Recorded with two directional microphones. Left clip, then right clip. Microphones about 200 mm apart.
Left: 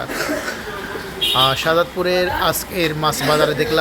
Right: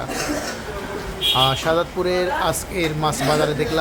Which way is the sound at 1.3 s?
5° left (ahead or behind).